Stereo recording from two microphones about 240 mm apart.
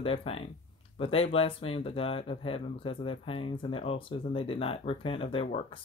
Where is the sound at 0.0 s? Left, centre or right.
Left.